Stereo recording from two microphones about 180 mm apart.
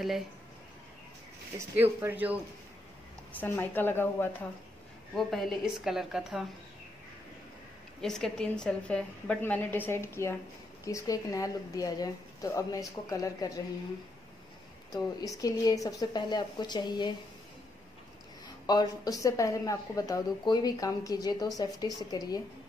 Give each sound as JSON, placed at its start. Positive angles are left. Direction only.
{"t": 1.6, "sound": "speech", "side_deg": -15}
{"t": 3.3, "sound": "a woman's voice", "side_deg": 10}
{"t": 5.1, "sound": "a woman's voice", "side_deg": 0}
{"t": 8.0, "sound": "a woman's voice", "side_deg": 5}
{"t": 14.9, "sound": "speech", "side_deg": 20}
{"t": 18.7, "sound": "speech", "side_deg": 20}